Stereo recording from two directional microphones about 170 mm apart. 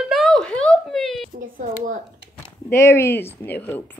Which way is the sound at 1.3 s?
55° right (ahead or behind).